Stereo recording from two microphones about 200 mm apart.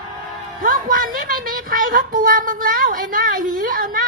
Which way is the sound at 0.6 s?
45° right (ahead or behind).